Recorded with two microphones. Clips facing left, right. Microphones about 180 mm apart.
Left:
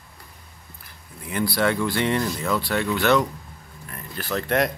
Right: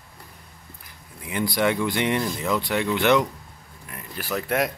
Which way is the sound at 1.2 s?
20° right (ahead or behind).